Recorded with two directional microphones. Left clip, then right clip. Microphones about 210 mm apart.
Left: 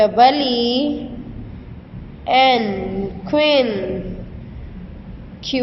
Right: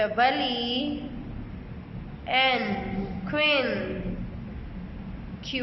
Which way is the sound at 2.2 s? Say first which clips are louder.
Left 10 dB; 25° left (ahead or behind).